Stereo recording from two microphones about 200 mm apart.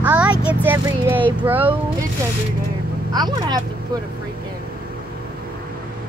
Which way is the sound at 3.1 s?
20° right (ahead or behind).